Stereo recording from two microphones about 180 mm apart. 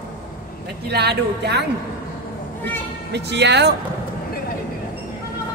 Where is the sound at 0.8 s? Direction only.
65° right (ahead or behind).